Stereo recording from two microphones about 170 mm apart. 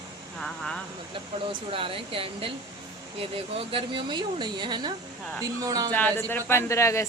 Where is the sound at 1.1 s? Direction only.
30° right (ahead or behind).